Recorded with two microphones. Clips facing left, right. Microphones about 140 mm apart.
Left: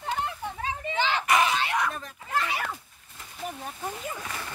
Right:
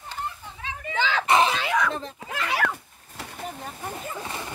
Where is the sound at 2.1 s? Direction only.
90° right.